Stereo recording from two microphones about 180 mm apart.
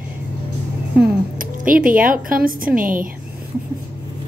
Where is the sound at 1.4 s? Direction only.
50° right (ahead or behind).